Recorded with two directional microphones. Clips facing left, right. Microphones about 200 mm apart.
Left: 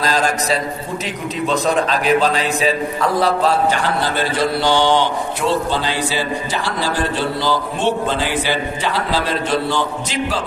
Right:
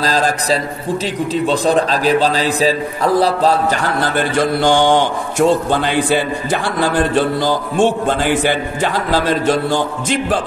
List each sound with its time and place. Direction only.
0.0 s a man's voice: 35° right (ahead or behind)
4.0 s a man's voice: 50° right (ahead or behind)